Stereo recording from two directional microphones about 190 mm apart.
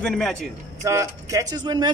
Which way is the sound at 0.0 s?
5° left (ahead or behind).